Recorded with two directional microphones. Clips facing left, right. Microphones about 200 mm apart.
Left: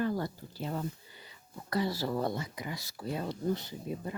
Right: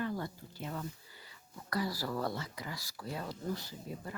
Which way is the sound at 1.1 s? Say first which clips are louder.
Left 4 dB; 20° left (ahead or behind).